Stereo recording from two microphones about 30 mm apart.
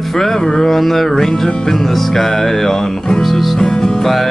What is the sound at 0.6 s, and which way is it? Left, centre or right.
Speech, centre.